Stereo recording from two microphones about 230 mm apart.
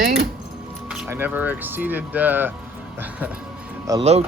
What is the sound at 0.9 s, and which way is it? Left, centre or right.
Speech, centre.